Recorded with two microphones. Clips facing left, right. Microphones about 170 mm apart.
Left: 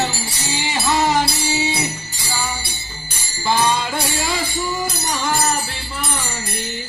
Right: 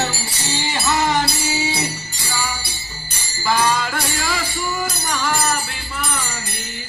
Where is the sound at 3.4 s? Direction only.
20° left (ahead or behind).